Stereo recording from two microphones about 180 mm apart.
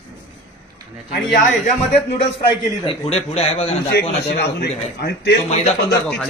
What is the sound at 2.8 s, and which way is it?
A man's voice, 30° left (ahead or behind).